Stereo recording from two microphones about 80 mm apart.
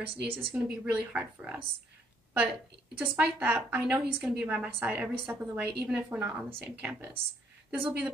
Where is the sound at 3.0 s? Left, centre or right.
Right.